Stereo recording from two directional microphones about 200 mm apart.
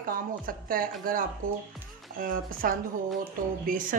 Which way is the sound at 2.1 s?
45° right (ahead or behind).